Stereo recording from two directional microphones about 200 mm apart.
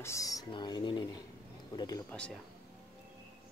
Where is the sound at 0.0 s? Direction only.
15° left (ahead or behind).